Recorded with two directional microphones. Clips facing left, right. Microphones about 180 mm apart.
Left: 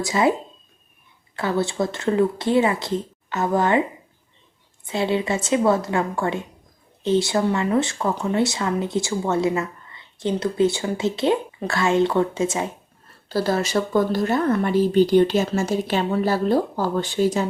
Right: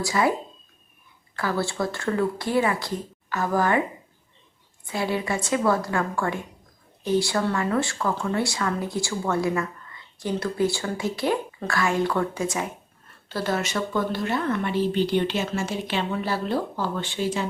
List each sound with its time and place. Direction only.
0.0 s speech: 20° left (ahead or behind)
1.4 s speech: 20° left (ahead or behind)
4.9 s speech: 25° left (ahead or behind)
13.2 s speech: 35° left (ahead or behind)